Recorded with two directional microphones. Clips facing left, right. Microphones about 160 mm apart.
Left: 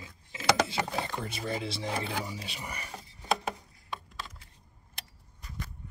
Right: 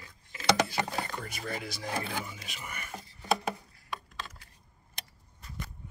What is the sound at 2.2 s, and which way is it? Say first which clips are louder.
Speech: left 4 dB; 35° left (ahead or behind).